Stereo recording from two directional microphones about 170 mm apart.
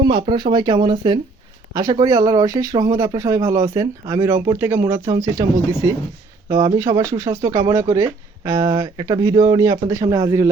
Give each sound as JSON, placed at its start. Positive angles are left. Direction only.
{"t": 0.0, "sound": "speech", "side_deg": -30}